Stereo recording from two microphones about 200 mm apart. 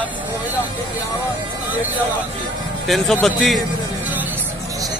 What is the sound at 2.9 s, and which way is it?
Speech, 5° left (ahead or behind).